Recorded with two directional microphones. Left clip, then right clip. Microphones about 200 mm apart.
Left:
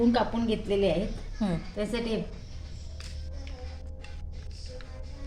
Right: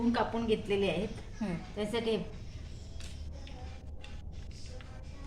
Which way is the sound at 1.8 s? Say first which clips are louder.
Left 1 dB; 10° left (ahead or behind).